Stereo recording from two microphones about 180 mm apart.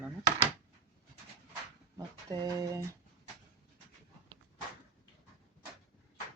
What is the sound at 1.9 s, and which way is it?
Speech, 20° right (ahead or behind).